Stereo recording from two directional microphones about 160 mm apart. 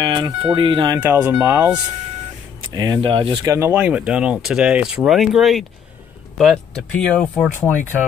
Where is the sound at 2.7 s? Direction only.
25° right (ahead or behind).